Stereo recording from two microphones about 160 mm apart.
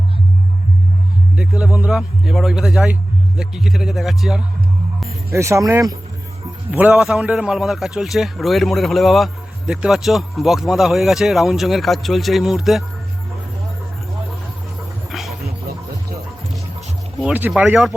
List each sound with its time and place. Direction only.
1.4 s a man's voice: 5° right (ahead or behind)
5.3 s speech: 15° right (ahead or behind)
6.7 s a man's voice: 10° right (ahead or behind)
15.1 s a sound: centre (ahead or behind)
17.2 s speech: 10° right (ahead or behind)